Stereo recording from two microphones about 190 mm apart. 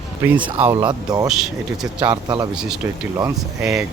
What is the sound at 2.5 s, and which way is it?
Speech, 5° right (ahead or behind).